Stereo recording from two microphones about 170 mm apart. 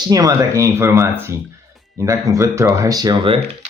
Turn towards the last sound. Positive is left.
turn(degrees=-25)  # may be behind; listen again after turning